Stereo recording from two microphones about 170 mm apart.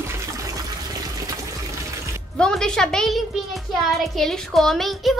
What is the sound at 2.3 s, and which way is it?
Music, 5° left (ahead or behind).